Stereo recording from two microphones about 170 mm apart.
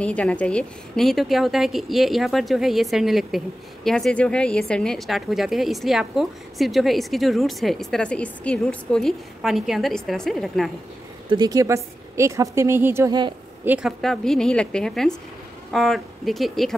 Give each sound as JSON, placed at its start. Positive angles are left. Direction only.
{"t": 0.0, "sound": "a woman's voice", "side_deg": 5}
{"t": 11.2, "sound": "a woman's voice", "side_deg": -25}
{"t": 13.7, "sound": "a woman's voice", "side_deg": 0}